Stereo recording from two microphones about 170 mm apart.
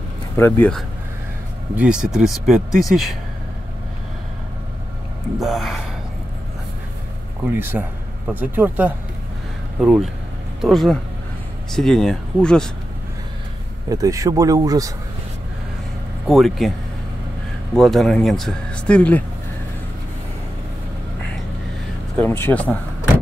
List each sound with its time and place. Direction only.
0.4 s speech: 10° left (ahead or behind)
1.8 s speech: 5° right (ahead or behind)
5.4 s speech: centre (ahead or behind)
7.5 s speech: 10° right (ahead or behind); by 12.7 s 5° left (ahead or behind)
13.8 s speech: 20° right (ahead or behind)
16.3 s speech: centre (ahead or behind)
17.7 s speech: centre (ahead or behind)
22.1 s speech: 10° left (ahead or behind)